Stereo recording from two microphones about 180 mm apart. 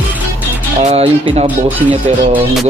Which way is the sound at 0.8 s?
35° right (ahead or behind).